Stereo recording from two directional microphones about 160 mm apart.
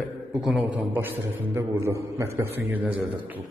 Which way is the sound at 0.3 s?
Centre (ahead or behind).